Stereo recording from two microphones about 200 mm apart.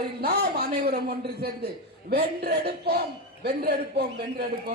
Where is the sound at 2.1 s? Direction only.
50° right (ahead or behind).